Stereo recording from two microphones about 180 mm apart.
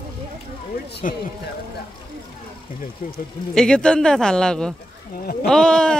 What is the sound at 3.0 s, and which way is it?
Speech, 50° left (ahead or behind).